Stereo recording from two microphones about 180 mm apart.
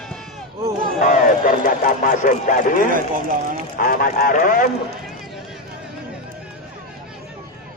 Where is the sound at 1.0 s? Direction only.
50° left (ahead or behind).